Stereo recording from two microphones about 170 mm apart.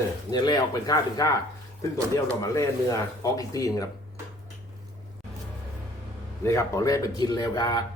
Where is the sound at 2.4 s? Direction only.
20° left (ahead or behind).